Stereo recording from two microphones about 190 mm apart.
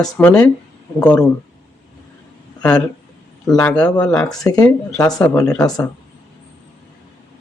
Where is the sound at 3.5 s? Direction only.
5° left (ahead or behind).